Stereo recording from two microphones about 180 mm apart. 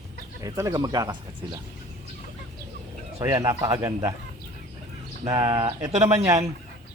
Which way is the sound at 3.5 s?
15° right (ahead or behind).